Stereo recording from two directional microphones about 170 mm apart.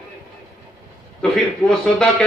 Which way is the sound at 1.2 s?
Centre (ahead or behind).